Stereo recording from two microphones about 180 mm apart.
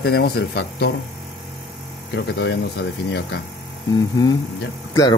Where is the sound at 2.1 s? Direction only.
75° left (ahead or behind).